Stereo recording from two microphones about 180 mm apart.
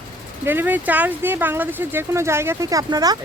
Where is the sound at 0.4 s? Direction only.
10° right (ahead or behind).